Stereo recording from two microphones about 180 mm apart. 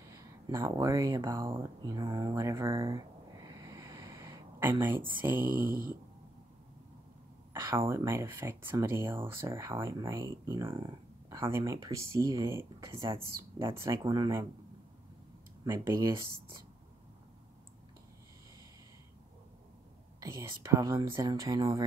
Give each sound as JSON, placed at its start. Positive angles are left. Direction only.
{"t": 0.1, "sound": "speech", "side_deg": -15}
{"t": 5.5, "sound": "a sound", "side_deg": -55}
{"t": 7.6, "sound": "speech", "side_deg": -15}
{"t": 15.6, "sound": "speech", "side_deg": -20}
{"t": 20.2, "sound": "speech", "side_deg": -15}